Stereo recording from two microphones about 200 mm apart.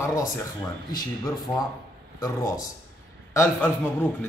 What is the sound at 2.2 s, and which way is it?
A man's voice, 15° left (ahead or behind).